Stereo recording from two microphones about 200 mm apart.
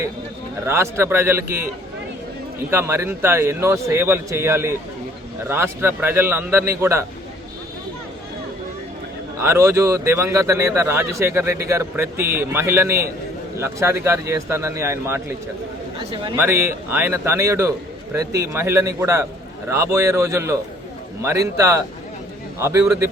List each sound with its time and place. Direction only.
0.6 s a man's voice: 15° right (ahead or behind)
2.6 s a man's voice: 10° right (ahead or behind)
9.4 s a man's voice: 15° right (ahead or behind)
16.0 s a man's voice: 25° right (ahead or behind)
16.4 s a man's voice: 10° right (ahead or behind)